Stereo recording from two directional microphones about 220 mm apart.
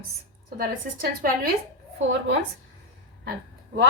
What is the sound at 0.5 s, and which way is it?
Speech, 40° right (ahead or behind).